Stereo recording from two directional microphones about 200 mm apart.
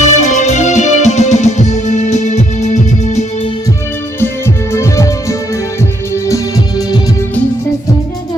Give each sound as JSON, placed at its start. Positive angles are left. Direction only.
{"t": 0.0, "sound": "music", "side_deg": 35}
{"t": 4.7, "sound": "music", "side_deg": 15}